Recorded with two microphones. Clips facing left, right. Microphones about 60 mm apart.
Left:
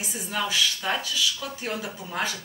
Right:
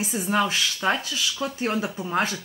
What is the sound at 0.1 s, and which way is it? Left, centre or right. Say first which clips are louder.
Speech: right 4 dB; right.